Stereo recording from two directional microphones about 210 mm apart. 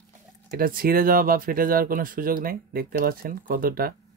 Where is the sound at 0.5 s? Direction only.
45° right (ahead or behind).